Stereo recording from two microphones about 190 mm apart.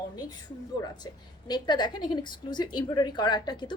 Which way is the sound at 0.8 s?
20° left (ahead or behind).